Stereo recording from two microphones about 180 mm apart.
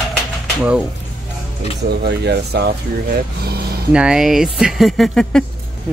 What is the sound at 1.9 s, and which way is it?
Speech, 65° right (ahead or behind).